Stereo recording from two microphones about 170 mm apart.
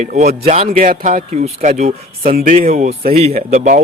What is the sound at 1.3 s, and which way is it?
Speech, 40° right (ahead or behind).